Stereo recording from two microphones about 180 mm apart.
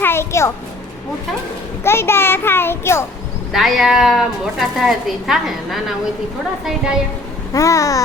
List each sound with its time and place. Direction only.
0.0 s a sound: 15° left (ahead or behind)
1.8 s a child's voice: 15° left (ahead or behind)
3.5 s a woman's voice: centre (ahead or behind)
7.5 s a child's voice: 20° left (ahead or behind)